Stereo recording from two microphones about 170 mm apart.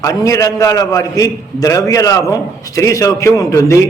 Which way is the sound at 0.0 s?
20° left (ahead or behind).